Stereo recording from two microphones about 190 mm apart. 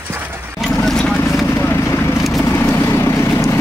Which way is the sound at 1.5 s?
15° left (ahead or behind).